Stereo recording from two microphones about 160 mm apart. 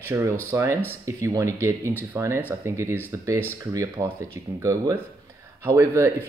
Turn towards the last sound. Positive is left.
turn(degrees=-20)  # may be behind; listen again after turning